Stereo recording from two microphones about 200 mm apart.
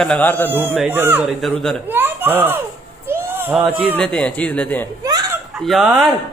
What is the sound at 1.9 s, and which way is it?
Speech, 10° right (ahead or behind).